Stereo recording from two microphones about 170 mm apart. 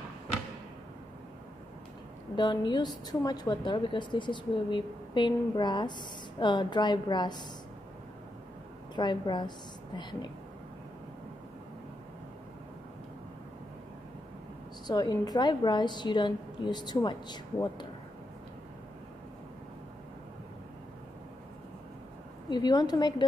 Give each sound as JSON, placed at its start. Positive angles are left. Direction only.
{"t": 2.3, "sound": "speech", "side_deg": 25}
{"t": 8.9, "sound": "speech", "side_deg": 25}
{"t": 14.9, "sound": "speech", "side_deg": 25}
{"t": 22.5, "sound": "speech", "side_deg": 25}